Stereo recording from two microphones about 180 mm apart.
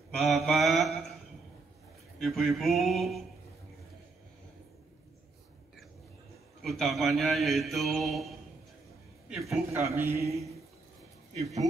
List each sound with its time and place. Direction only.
0.1 s mantra: centre (ahead or behind)
2.1 s speech: centre (ahead or behind)
6.6 s speech: centre (ahead or behind)
9.7 s a man's voice: 15° right (ahead or behind)